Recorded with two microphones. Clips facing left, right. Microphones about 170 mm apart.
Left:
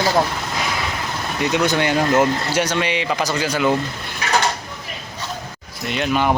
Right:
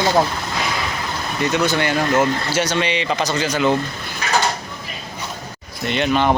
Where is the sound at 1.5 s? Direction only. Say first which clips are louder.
Left 1 dB; 15° left (ahead or behind).